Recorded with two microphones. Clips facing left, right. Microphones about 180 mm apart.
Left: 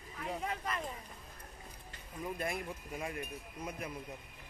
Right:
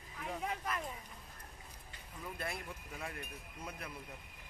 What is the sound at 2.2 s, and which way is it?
Speech, 15° left (ahead or behind).